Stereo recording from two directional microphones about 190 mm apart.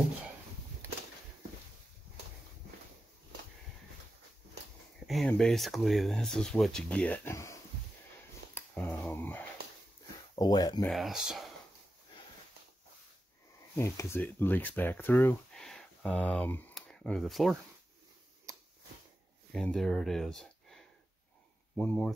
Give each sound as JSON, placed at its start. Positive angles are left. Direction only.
{"t": 5.0, "sound": "speech", "side_deg": 0}
{"t": 8.5, "sound": "a sound", "side_deg": 10}
{"t": 10.3, "sound": "speech", "side_deg": 20}
{"t": 10.9, "sound": "speech", "side_deg": 0}
{"t": 13.7, "sound": "speech", "side_deg": 15}
{"t": 19.5, "sound": "speech", "side_deg": 0}